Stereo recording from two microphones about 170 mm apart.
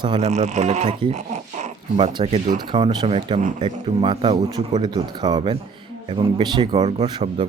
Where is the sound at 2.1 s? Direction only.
25° right (ahead or behind).